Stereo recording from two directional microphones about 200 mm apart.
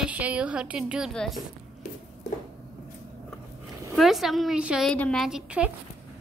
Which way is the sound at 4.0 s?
Centre (ahead or behind).